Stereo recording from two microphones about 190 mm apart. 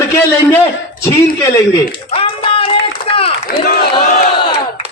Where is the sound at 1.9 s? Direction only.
30° left (ahead or behind).